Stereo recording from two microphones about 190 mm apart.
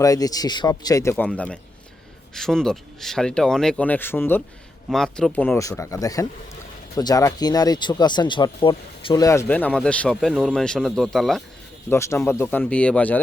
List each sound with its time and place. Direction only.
0.0 s speech: 20° left (ahead or behind)
1.1 s speech: 5° left (ahead or behind)
11.9 s speech: 15° left (ahead or behind)